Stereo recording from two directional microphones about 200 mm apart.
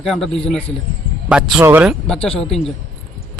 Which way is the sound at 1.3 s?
5° right (ahead or behind).